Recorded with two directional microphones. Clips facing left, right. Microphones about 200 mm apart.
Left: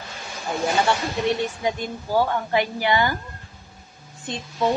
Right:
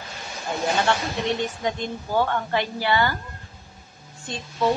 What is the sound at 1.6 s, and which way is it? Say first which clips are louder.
A woman's voice: left 1 dB; 10° left (ahead or behind).